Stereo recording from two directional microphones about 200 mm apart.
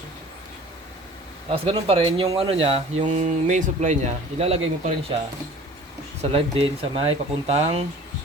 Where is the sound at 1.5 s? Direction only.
30° right (ahead or behind).